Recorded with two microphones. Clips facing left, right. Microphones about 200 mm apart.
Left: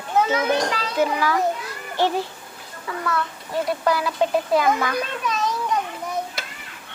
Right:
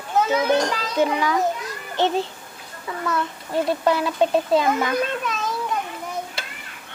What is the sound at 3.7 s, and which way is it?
A child's voice, 25° right (ahead or behind).